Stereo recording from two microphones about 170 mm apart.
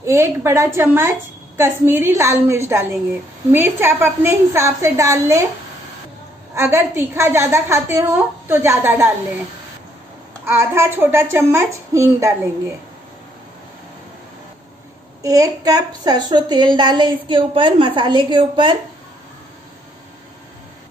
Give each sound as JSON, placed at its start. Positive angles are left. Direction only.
{"t": 0.0, "sound": "a woman's voice", "side_deg": -15}
{"t": 6.5, "sound": "a woman's voice", "side_deg": -15}
{"t": 10.4, "sound": "a woman's voice", "side_deg": -15}
{"t": 15.2, "sound": "a woman's voice", "side_deg": -20}